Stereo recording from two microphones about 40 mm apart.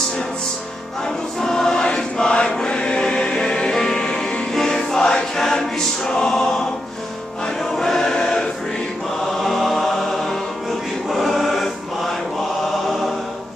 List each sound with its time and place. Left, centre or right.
1.4 s choir: centre
2.6 s music: left
4.7 s choir: centre
7.7 s choir: centre
9.4 s choir: centre